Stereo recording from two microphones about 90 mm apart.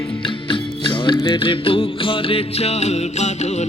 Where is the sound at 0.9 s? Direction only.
60° left (ahead or behind); by 2.4 s 85° left.